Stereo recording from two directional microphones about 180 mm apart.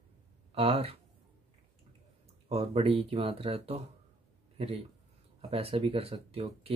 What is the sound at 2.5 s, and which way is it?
Speech, 30° right (ahead or behind).